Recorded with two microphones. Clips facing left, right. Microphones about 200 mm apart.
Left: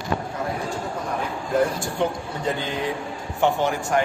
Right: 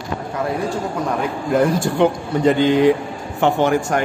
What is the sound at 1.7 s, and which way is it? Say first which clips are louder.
Speech: right 8 dB; 85° right.